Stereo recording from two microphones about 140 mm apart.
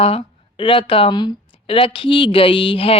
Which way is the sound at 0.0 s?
40° left (ahead or behind).